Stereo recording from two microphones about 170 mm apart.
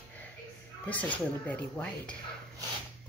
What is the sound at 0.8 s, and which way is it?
Speech, 10° left (ahead or behind).